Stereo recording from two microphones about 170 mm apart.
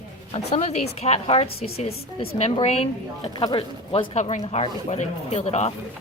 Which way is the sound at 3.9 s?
35° left (ahead or behind).